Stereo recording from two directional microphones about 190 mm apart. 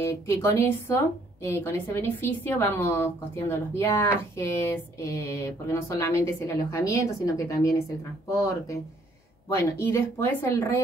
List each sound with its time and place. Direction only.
0.0 s a woman's voice: 15° left (ahead or behind)
9.8 s a woman's voice: 10° left (ahead or behind)